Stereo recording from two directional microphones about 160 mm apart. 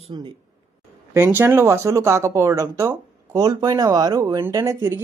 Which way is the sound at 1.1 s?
15° right (ahead or behind).